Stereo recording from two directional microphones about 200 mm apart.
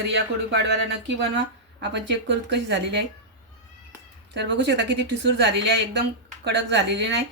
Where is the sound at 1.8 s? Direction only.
60° right (ahead or behind).